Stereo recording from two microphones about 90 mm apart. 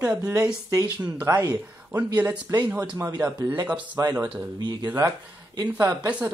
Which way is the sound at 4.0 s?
40° right (ahead or behind).